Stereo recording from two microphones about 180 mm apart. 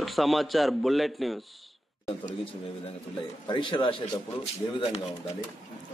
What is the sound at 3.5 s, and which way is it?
Speech, 25° left (ahead or behind).